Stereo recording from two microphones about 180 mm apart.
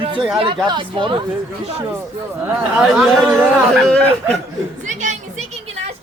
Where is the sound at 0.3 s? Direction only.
30° right (ahead or behind).